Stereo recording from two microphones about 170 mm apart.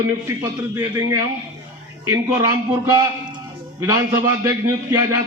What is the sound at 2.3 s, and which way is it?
A man's voice, 20° right (ahead or behind).